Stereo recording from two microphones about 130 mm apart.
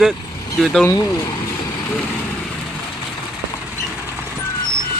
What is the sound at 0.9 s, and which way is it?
Speech, 20° left (ahead or behind).